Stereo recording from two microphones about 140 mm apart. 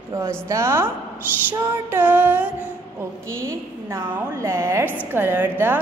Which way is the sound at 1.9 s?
15° right (ahead or behind).